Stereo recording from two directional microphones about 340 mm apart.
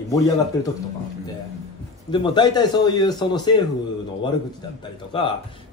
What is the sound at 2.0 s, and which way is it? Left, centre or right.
Speech, centre.